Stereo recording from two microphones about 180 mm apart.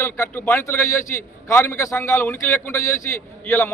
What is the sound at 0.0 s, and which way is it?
A man's voice, 15° left (ahead or behind).